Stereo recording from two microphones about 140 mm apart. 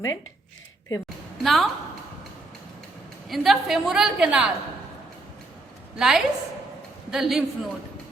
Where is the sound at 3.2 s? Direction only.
Centre (ahead or behind).